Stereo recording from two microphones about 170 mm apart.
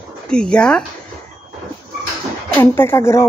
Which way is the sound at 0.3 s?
5° left (ahead or behind).